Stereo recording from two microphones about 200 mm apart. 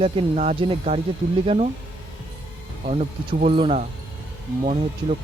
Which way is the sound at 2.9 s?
30° right (ahead or behind).